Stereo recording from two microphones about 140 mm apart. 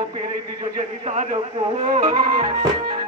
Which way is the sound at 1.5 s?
35° right (ahead or behind).